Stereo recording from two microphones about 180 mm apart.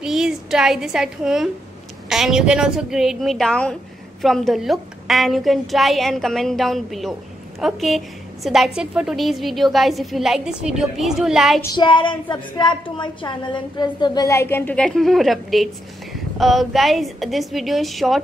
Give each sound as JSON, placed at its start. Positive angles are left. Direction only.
{"t": 0.0, "sound": "a woman's voice", "side_deg": 0}
{"t": 11.6, "sound": "a woman's voice", "side_deg": 25}